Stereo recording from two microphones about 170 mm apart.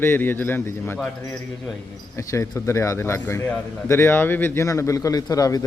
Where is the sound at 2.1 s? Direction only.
15° left (ahead or behind).